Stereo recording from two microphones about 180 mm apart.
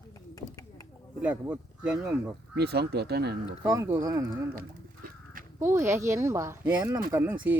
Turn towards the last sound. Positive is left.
turn(degrees=-15)  # may be behind; listen again after turning